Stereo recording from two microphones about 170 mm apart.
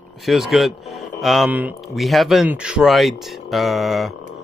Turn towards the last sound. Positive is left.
turn(degrees=0)  # may be behind; listen again after turning